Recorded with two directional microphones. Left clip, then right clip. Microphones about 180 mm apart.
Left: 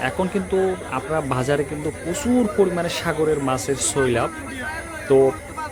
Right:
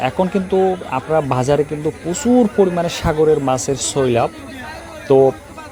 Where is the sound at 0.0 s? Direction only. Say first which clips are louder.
Right 5 dB; 30° right (ahead or behind).